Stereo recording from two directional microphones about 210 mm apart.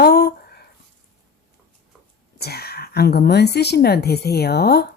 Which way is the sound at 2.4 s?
50° left (ahead or behind).